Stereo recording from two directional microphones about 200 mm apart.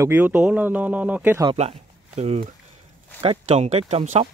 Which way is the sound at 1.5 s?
30° right (ahead or behind).